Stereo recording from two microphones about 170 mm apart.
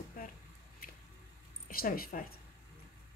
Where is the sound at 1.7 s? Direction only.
60° left (ahead or behind).